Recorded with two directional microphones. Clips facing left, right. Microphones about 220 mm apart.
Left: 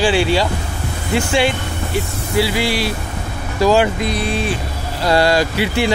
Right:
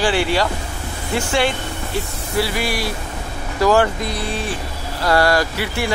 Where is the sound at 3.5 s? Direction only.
15° left (ahead or behind).